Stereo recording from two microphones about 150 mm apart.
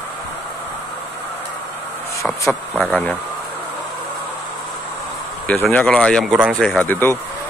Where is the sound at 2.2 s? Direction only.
20° left (ahead or behind).